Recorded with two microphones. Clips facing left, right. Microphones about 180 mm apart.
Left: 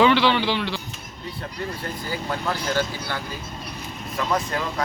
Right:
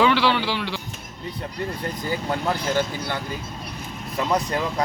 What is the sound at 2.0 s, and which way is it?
Speech, 20° right (ahead or behind).